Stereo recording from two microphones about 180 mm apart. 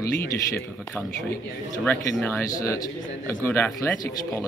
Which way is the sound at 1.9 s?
10° left (ahead or behind).